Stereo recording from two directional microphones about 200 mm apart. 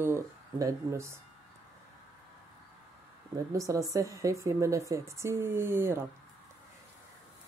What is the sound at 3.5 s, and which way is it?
Speech, 15° right (ahead or behind).